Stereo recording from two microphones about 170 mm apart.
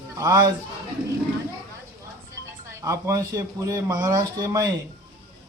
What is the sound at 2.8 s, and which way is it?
Speech, 20° right (ahead or behind).